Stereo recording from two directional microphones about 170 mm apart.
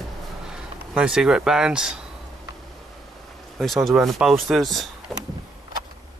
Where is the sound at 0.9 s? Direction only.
5° right (ahead or behind).